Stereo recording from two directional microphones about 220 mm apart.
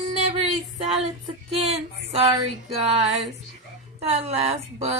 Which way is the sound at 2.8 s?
30° right (ahead or behind).